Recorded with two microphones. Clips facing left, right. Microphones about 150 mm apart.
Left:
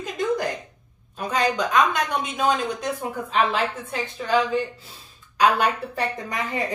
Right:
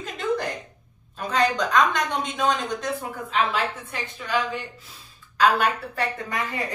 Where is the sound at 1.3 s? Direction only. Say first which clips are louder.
Even; 10° left (ahead or behind).